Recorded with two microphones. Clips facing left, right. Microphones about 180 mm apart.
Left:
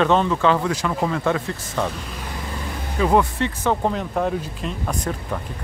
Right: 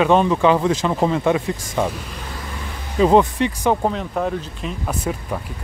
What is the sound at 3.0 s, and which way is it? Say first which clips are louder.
Speech: right 4 dB; 25° right (ahead or behind).